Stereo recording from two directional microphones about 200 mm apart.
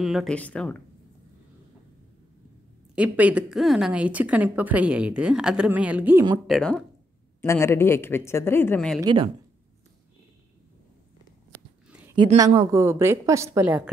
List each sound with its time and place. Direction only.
0.0 s speech: centre (ahead or behind)
3.0 s speech: 5° right (ahead or behind)
6.4 s speech: centre (ahead or behind)
7.4 s speech: 10° left (ahead or behind)
9.0 s speech: 25° right (ahead or behind)
12.2 s speech: 20° right (ahead or behind)